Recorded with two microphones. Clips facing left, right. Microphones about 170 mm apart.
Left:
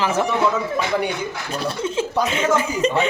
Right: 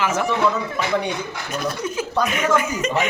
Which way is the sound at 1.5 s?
30° left (ahead or behind).